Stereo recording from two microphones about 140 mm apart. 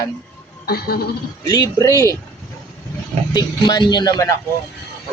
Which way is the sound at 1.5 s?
25° left (ahead or behind).